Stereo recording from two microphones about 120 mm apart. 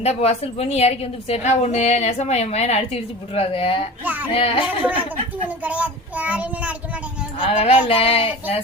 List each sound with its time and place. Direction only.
0.0 s a woman's voice: 65° left (ahead or behind); by 3.8 s 50° left (ahead or behind)
4.0 s a child's voice: 15° right (ahead or behind)
4.3 s a sound: 50° left (ahead or behind)
5.6 s a child's voice: 10° right (ahead or behind)
7.3 s a woman's voice: 50° left (ahead or behind)
7.9 s a sound: 50° left (ahead or behind)